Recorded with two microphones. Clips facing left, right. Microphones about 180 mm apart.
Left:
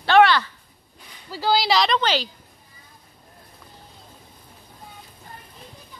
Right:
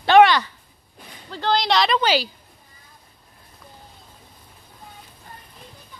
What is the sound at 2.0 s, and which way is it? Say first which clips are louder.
Speech: right 3 dB; 10° right (ahead or behind).